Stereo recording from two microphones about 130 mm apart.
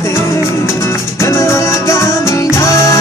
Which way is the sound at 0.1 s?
20° left (ahead or behind).